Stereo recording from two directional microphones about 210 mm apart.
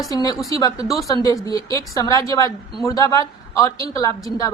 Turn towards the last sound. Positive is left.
turn(degrees=15)  # may be behind; listen again after turning